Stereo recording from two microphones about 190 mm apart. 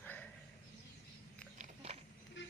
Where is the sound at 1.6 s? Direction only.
30° right (ahead or behind).